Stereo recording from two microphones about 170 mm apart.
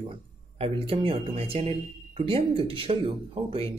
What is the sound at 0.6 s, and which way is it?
Speech, 30° right (ahead or behind).